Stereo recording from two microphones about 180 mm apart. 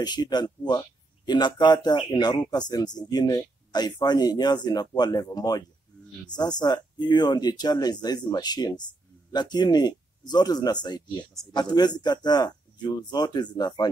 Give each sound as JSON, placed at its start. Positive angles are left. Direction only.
{"t": 0.0, "sound": "speech", "side_deg": 25}